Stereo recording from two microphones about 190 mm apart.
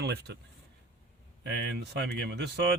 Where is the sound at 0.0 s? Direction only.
60° right (ahead or behind).